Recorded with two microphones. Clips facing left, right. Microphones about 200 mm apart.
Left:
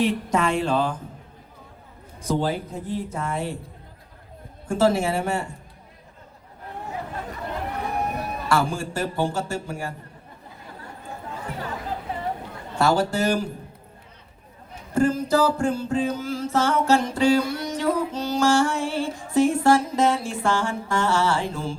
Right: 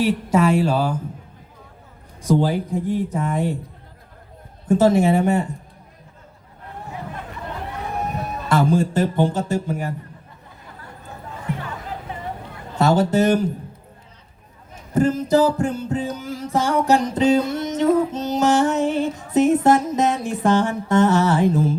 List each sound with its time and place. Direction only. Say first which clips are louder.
0.0 s speech: right 4 dB; 5° right (ahead or behind)
2.2 s speech: right 5 dB; 15° right (ahead or behind)
4.7 s music: right 5 dB; 20° right (ahead or behind)
8.4 s music: right 6 dB; 20° right (ahead or behind)
12.7 s music: right 4 dB; 20° right (ahead or behind)
14.9 s music: right 3 dB; 20° right (ahead or behind)